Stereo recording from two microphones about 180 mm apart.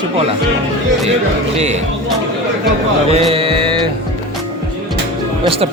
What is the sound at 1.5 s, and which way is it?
Speech, 40° right (ahead or behind).